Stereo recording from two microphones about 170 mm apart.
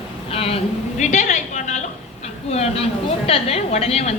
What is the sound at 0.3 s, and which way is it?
A woman's voice, 35° left (ahead or behind).